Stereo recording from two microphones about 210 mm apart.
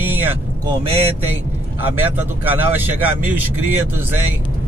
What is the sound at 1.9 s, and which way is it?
Speech, 10° right (ahead or behind).